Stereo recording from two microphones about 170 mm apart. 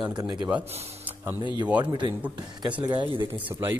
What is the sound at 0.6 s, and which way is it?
Speech, 35° right (ahead or behind).